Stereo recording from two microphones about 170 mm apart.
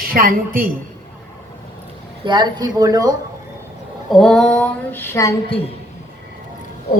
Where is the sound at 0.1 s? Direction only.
60° right (ahead or behind).